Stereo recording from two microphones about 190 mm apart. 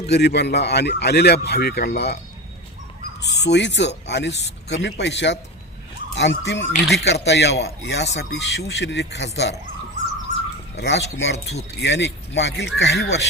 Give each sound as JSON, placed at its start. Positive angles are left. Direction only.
{"t": 0.1, "sound": "speech", "side_deg": 60}
{"t": 3.2, "sound": "speech", "side_deg": 65}
{"t": 10.8, "sound": "speech", "side_deg": 65}